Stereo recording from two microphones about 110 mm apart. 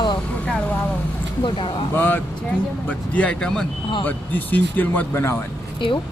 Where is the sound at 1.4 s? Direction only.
55° left (ahead or behind).